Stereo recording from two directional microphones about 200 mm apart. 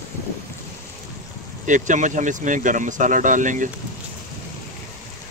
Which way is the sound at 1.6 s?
40° right (ahead or behind).